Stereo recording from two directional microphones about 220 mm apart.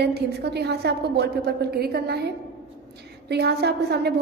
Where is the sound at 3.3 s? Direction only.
45° right (ahead or behind).